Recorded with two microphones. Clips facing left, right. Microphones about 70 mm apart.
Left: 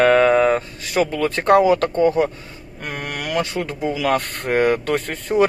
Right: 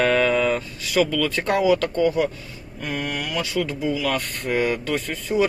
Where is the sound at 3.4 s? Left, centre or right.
Left.